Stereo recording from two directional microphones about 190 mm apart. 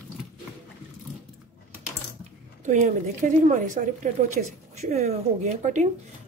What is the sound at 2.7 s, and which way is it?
Speech, 40° right (ahead or behind).